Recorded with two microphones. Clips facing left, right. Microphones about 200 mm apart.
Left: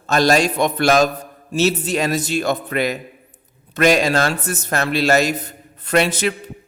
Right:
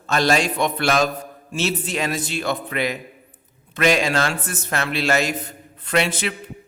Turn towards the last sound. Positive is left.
turn(degrees=40)  # may be behind; listen again after turning